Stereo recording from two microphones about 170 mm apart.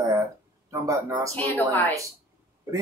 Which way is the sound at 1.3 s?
10° left (ahead or behind).